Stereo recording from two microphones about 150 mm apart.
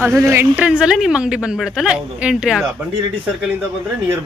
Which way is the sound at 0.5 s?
10° right (ahead or behind).